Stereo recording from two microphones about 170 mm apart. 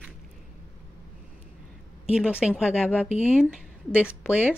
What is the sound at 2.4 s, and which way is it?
Speech, 5° right (ahead or behind).